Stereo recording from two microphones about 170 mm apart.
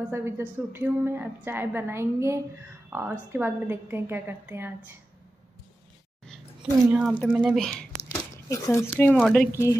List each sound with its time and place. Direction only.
0.1 s a woman's voice: 15° right (ahead or behind)
6.2 s a sound: 5° left (ahead or behind)
6.9 s a woman's voice: 5° right (ahead or behind)
8.1 s a sound: 20° left (ahead or behind)
9.1 s speech: centre (ahead or behind)
9.5 s speech: 15° left (ahead or behind)